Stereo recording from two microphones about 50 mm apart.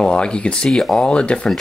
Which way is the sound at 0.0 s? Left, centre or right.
Centre.